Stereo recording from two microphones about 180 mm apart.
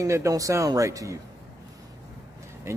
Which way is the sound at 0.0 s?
15° right (ahead or behind).